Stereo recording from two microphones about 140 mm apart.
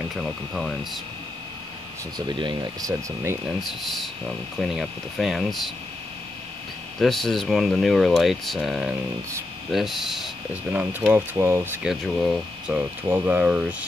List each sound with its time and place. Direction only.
0.1 s speech: centre (ahead or behind)
2.1 s speech: 35° right (ahead or behind)
3.4 s speech: centre (ahead or behind)
7.0 s speech: centre (ahead or behind)
10.7 s speech: 10° right (ahead or behind)
11.8 s speech: centre (ahead or behind)
13.1 s speech: 15° right (ahead or behind)